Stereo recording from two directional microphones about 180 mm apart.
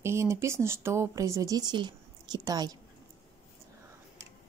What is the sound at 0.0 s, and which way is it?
Speech, 15° right (ahead or behind).